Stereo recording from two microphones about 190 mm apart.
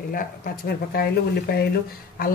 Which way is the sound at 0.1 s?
50° left (ahead or behind).